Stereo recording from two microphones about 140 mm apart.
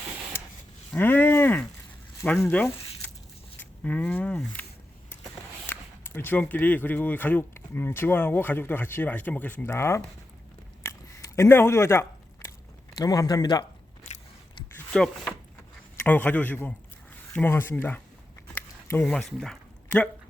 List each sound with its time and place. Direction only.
0.9 s speech: 15° left (ahead or behind)
5.6 s speech: 15° left (ahead or behind)
10.8 s a sound: 20° left (ahead or behind)
13.0 s a man's voice: 30° left (ahead or behind)
14.9 s speech: 5° left (ahead or behind)
18.5 s a sound: 15° left (ahead or behind)
19.0 s speech: 5° left (ahead or behind)